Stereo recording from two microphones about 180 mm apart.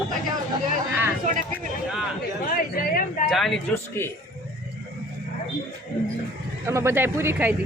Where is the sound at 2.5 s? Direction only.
55° left (ahead or behind).